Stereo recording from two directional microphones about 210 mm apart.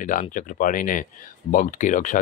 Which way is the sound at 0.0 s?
40° left (ahead or behind).